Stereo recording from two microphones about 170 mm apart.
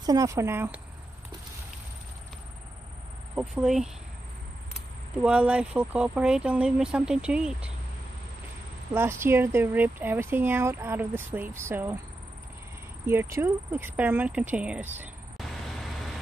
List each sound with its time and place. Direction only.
0.0 s speech: 20° right (ahead or behind)
3.3 s speech: 5° right (ahead or behind)
5.2 s speech: 5° right (ahead or behind)
8.9 s speech: 15° right (ahead or behind)
13.0 s speech: 15° right (ahead or behind)
15.3 s vehicle: centre (ahead or behind)